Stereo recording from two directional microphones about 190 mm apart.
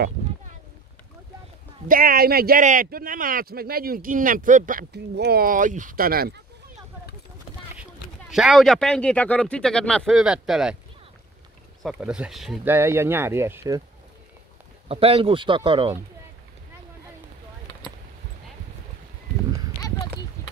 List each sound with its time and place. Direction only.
1.9 s a man's voice: 50° right (ahead or behind)
8.3 s speech: centre (ahead or behind)
11.8 s speech: 5° right (ahead or behind)
12.7 s speech: 15° right (ahead or behind)
14.9 s speech: 30° right (ahead or behind)
19.8 s clip-clop: 20° left (ahead or behind)